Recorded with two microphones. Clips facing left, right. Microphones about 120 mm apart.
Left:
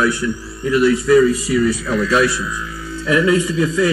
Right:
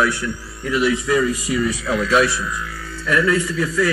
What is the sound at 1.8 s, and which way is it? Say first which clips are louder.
Speech: left 1 dB; 5° right (ahead or behind).